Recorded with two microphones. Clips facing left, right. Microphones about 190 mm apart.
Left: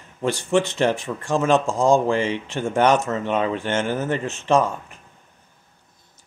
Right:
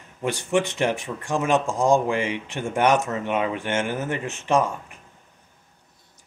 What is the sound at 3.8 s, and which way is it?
Speech, 35° left (ahead or behind).